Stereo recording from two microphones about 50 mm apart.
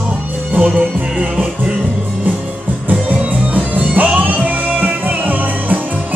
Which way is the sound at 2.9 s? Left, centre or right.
Right.